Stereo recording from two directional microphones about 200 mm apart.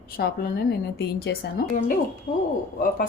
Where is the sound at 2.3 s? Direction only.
40° left (ahead or behind).